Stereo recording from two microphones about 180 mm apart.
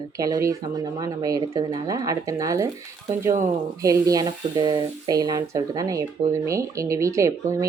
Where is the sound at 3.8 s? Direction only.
20° right (ahead or behind).